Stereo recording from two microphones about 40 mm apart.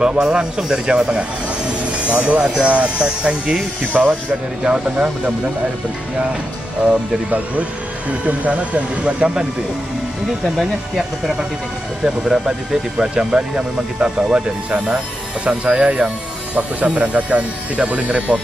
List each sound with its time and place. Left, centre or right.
0.2 s speech: centre; by 5.3 s right
6.8 s speech: right
10.4 s speech: centre; by 18.2 s right